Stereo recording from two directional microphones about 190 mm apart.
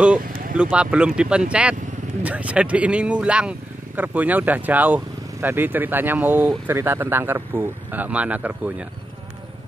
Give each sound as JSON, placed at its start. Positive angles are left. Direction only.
{"t": 0.2, "sound": "speech", "side_deg": -50}
{"t": 0.6, "sound": "speech", "side_deg": -5}